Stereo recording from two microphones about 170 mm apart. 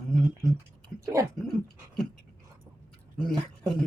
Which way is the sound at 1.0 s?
15° right (ahead or behind).